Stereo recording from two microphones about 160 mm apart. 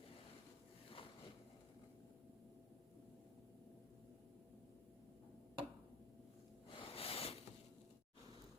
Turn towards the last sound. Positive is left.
turn(degrees=35)  # may be behind; listen again after turning